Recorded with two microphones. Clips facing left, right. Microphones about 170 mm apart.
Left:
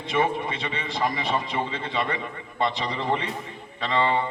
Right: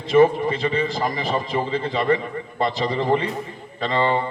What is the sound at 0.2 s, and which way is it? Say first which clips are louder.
A man's voice: right 9 dB; 35° right (ahead or behind).